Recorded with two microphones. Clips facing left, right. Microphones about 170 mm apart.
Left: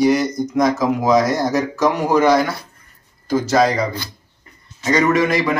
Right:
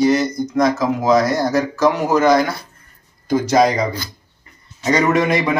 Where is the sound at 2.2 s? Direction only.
5° left (ahead or behind).